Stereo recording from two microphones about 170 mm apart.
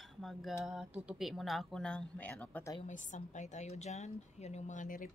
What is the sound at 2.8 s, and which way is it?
A woman's voice, 45° left (ahead or behind).